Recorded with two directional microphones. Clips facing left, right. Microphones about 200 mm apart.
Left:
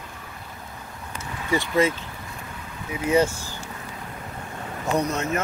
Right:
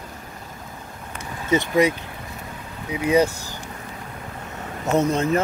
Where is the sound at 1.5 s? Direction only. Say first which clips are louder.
Right 3 dB; 20° right (ahead or behind).